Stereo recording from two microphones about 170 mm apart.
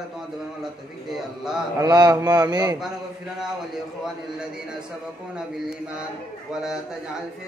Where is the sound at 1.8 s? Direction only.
25° right (ahead or behind).